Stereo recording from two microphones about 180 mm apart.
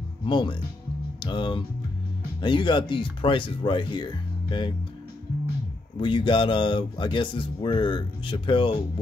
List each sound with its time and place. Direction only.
0.3 s speech: 25° left (ahead or behind)
5.9 s speech: 25° left (ahead or behind)